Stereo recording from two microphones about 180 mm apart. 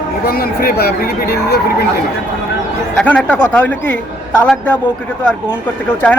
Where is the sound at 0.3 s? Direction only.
55° left (ahead or behind).